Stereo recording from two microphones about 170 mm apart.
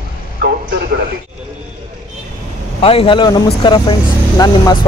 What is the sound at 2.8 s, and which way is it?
Speech, 30° left (ahead or behind).